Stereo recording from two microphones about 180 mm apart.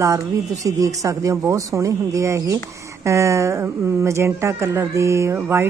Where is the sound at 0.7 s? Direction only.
20° right (ahead or behind).